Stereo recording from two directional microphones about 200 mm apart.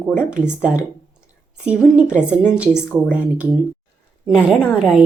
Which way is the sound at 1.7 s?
5° right (ahead or behind).